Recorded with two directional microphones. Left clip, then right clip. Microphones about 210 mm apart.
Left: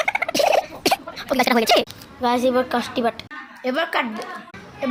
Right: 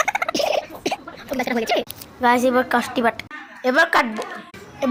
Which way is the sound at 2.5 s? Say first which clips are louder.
Right 1 dB; 5° right (ahead or behind).